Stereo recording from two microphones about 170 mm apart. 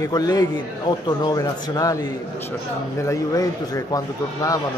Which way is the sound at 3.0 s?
20° left (ahead or behind).